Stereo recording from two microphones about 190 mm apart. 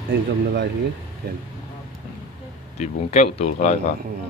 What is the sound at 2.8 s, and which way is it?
Speech, 35° left (ahead or behind).